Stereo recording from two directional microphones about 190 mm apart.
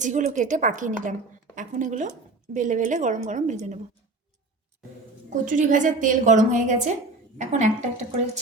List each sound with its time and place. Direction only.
0.0 s speech: 40° right (ahead or behind)
5.5 s speech: 40° right (ahead or behind)